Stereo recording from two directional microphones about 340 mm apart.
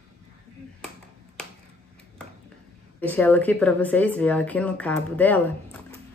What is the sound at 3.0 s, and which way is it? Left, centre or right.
Speech, centre.